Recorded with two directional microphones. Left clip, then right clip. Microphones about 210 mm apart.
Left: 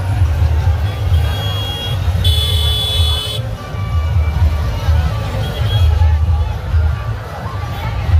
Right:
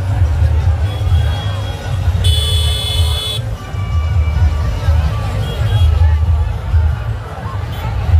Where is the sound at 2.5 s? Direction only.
20° right (ahead or behind).